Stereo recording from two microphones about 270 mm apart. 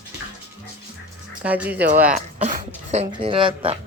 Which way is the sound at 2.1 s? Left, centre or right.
Right.